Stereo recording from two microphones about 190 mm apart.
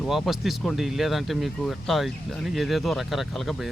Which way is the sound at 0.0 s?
Centre (ahead or behind).